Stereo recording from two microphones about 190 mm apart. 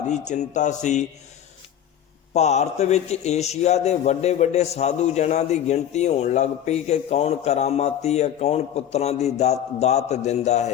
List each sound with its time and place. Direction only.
0.1 s a man's voice: 40° left (ahead or behind)
2.3 s a man's voice: 35° left (ahead or behind)